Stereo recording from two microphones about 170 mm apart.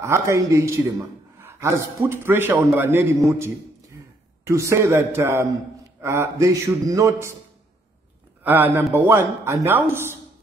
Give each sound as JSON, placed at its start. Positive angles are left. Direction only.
{"t": 0.0, "sound": "a man's voice", "side_deg": -15}
{"t": 8.5, "sound": "a man's voice", "side_deg": -10}